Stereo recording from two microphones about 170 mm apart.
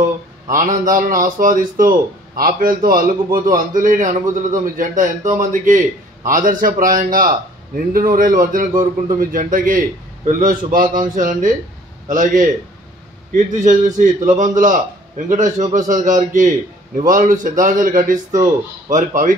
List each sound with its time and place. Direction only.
0.5 s a man's voice: 50° right (ahead or behind)